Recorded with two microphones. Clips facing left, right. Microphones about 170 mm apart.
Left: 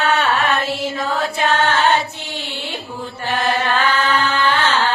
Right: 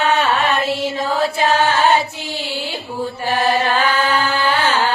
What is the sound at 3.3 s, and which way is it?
Mantra, 35° right (ahead or behind).